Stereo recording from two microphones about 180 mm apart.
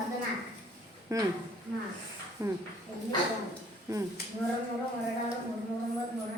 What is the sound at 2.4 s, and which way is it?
Speech, 15° right (ahead or behind).